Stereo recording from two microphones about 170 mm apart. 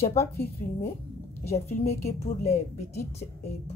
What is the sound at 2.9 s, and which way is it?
Speech, 15° left (ahead or behind).